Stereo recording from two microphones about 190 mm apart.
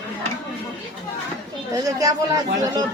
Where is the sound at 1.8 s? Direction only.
20° right (ahead or behind).